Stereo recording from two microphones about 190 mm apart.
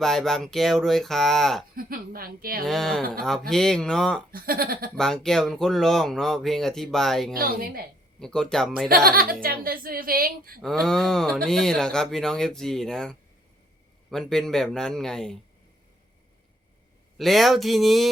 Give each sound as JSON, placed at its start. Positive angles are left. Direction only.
{"t": 0.0, "sound": "speech", "side_deg": 0}
{"t": 1.7, "sound": "speech", "side_deg": -50}
{"t": 2.6, "sound": "speech", "side_deg": 0}
{"t": 4.3, "sound": "speech", "side_deg": -50}
{"t": 4.9, "sound": "speech", "side_deg": 5}
{"t": 7.3, "sound": "speech", "side_deg": -50}
{"t": 8.2, "sound": "speech", "side_deg": 5}
{"t": 9.0, "sound": "speech", "side_deg": -50}
{"t": 10.6, "sound": "speech", "side_deg": 0}
{"t": 17.2, "sound": "speech", "side_deg": 0}